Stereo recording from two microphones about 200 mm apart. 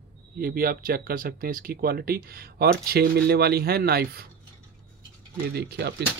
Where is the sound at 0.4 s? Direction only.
45° right (ahead or behind).